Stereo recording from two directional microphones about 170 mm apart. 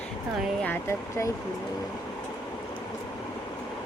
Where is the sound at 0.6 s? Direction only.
15° left (ahead or behind).